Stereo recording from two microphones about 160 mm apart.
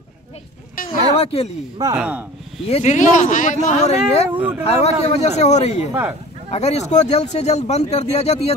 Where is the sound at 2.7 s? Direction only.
45° left (ahead or behind).